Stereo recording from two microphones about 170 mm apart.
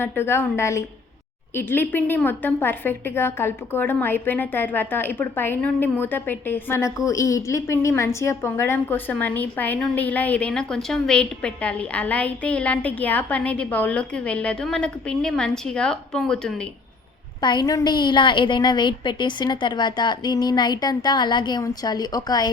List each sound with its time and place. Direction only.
0.0 s a woman's voice: 15° left (ahead or behind)
17.4 s a woman's voice: 25° left (ahead or behind)